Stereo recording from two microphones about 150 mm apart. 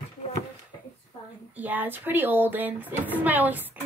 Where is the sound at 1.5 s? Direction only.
10° right (ahead or behind).